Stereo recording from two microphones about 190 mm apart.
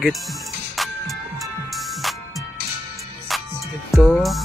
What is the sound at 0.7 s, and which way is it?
Music, centre (ahead or behind).